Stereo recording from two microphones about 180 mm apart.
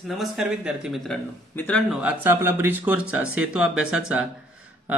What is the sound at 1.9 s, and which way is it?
A man's voice, 10° right (ahead or behind).